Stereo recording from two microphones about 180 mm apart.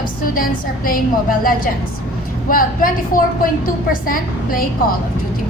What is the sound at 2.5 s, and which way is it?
A woman's voice, 50° left (ahead or behind).